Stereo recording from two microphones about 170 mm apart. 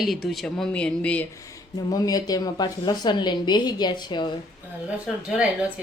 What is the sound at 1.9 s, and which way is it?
A woman's voice, 20° left (ahead or behind).